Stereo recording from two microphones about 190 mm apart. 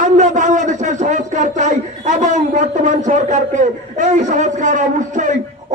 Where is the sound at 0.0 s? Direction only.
40° right (ahead or behind).